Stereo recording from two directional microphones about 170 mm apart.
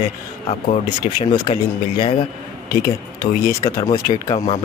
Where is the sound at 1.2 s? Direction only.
35° left (ahead or behind).